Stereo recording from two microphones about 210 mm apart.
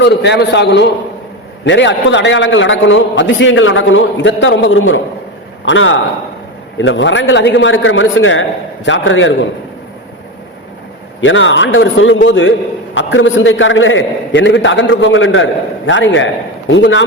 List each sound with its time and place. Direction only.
0.0 s a man's voice: 55° left (ahead or behind)
11.2 s a man's voice: 65° left (ahead or behind)